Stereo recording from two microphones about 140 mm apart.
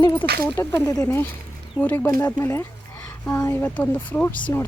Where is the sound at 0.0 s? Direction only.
15° left (ahead or behind).